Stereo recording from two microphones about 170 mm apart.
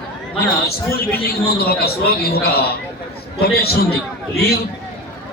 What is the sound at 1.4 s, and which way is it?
Speech, 65° left (ahead or behind).